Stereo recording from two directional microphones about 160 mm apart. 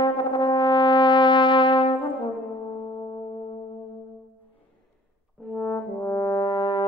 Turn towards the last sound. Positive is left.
turn(degrees=25)  # may be behind; listen again after turning